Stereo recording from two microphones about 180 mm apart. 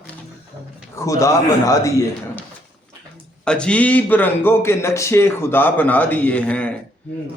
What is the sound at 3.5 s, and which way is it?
A man's voice, 5° left (ahead or behind).